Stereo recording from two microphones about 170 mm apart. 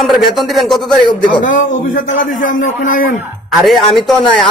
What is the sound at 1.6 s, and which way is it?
Speech, 50° left (ahead or behind).